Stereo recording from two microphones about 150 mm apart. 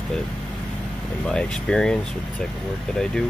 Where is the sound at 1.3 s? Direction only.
5° left (ahead or behind).